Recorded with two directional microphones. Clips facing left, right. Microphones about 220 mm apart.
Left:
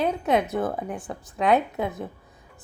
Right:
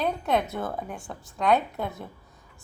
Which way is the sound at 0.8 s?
15° left (ahead or behind).